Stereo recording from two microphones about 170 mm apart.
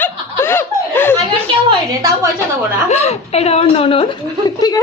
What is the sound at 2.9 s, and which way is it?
Speech, 40° left (ahead or behind).